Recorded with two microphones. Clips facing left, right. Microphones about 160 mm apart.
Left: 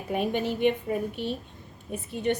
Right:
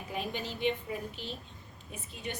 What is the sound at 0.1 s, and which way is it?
A woman's voice, 55° left (ahead or behind).